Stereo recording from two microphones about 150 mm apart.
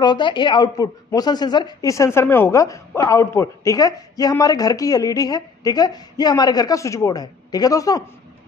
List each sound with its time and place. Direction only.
0.0 s a woman's voice: 30° left (ahead or behind)